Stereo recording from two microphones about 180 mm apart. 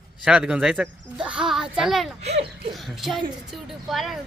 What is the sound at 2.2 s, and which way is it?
Speech, 35° right (ahead or behind).